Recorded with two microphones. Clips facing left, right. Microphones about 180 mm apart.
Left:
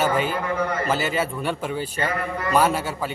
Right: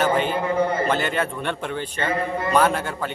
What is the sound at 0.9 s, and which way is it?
A man's voice, 5° left (ahead or behind).